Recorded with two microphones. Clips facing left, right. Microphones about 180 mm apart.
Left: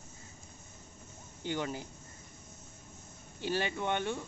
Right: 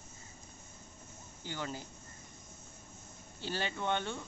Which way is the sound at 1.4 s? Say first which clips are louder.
Left 5 dB; 20° left (ahead or behind).